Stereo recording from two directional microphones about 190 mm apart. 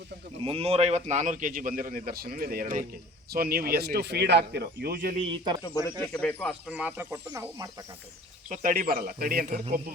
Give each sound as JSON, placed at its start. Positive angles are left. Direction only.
{"t": 0.4, "sound": "a man's voice", "side_deg": -30}
{"t": 5.6, "sound": "speech", "side_deg": 20}
{"t": 6.1, "sound": "speech", "side_deg": 5}
{"t": 6.7, "sound": "speech", "side_deg": -5}
{"t": 8.4, "sound": "a man's voice", "side_deg": -45}